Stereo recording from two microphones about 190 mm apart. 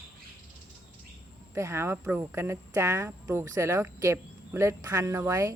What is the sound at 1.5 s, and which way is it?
Speech, 15° right (ahead or behind).